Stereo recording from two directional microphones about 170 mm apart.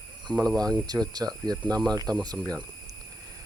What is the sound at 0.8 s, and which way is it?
Speech, 25° right (ahead or behind).